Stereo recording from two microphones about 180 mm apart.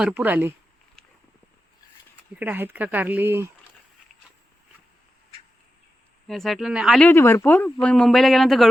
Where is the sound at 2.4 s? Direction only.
10° right (ahead or behind).